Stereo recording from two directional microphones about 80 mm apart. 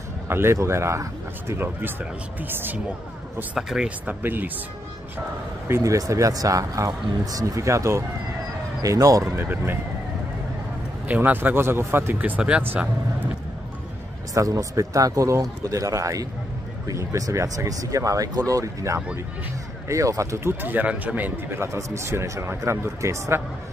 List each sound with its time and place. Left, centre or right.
0.3 s a man's voice: right
3.5 s speech: centre
4.0 s a man's voice: right
5.7 s speech: right
9.2 s a man's voice: right
11.1 s a man's voice: right
12.2 s speech: centre
14.3 s a man's voice: right
21.5 s speech: right